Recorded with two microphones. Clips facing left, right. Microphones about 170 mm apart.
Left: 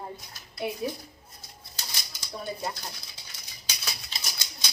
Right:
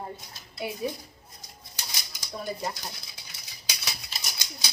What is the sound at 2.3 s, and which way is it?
Speech, centre (ahead or behind).